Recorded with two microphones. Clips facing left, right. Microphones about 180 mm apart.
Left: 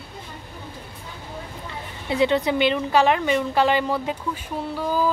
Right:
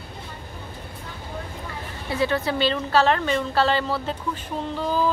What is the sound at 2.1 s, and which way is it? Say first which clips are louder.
A woman's voice: left 3 dB; 20° left (ahead or behind).